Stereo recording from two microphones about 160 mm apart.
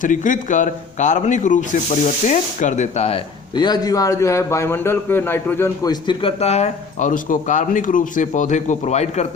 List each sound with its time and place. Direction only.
0.0 s a man's voice: 55° left (ahead or behind)